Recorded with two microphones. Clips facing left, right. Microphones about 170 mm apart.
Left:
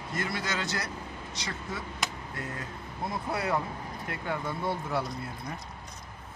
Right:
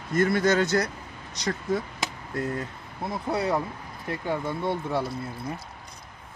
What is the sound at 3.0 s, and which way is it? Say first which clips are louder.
Speech: right 4 dB; 25° right (ahead or behind).